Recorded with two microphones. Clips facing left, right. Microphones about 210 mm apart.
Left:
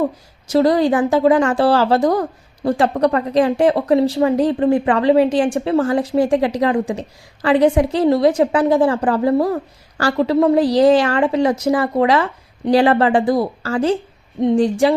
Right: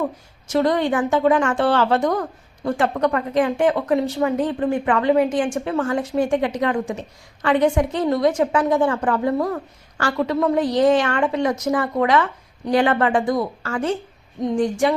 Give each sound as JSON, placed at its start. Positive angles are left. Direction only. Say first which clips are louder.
{"t": 0.5, "sound": "a woman's voice", "louder": "left 5 dB", "side_deg": 35}